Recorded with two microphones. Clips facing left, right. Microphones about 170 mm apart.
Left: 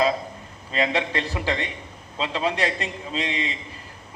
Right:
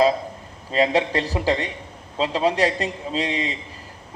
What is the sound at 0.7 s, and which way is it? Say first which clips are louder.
A man's voice: right 5 dB; 35° right (ahead or behind).